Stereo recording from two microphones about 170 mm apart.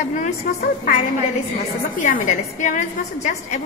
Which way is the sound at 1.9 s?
50° left (ahead or behind).